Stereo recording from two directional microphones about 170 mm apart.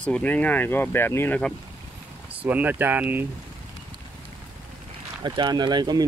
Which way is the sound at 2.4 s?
10° right (ahead or behind).